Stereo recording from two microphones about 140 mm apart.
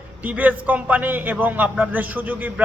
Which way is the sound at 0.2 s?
10° right (ahead or behind).